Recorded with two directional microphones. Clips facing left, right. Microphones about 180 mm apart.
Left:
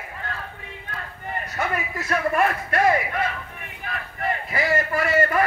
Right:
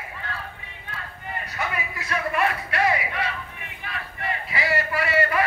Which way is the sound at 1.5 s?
45° left (ahead or behind).